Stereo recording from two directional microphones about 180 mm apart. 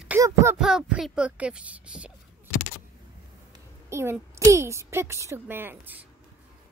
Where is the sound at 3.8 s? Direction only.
15° right (ahead or behind).